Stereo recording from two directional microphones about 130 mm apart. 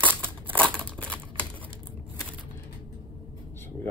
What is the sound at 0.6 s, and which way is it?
Crumpling, 10° left (ahead or behind).